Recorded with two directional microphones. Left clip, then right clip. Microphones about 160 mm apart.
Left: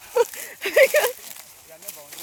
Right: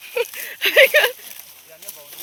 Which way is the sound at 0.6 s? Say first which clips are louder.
Right 4 dB; 15° left (ahead or behind).